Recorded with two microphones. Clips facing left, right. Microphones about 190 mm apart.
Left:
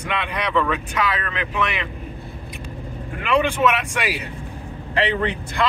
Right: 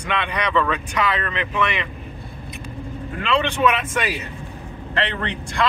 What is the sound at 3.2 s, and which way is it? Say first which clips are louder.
Speech: left 1 dB; 10° left (ahead or behind).